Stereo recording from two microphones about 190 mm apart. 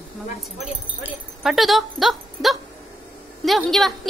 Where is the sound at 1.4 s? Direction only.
Centre (ahead or behind).